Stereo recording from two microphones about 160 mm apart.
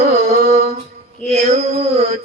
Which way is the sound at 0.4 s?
40° right (ahead or behind).